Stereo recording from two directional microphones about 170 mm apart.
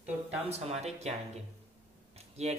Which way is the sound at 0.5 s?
40° right (ahead or behind).